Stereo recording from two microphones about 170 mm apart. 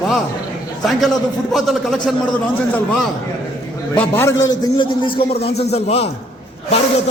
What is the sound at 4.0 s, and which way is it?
A man's voice, 15° left (ahead or behind).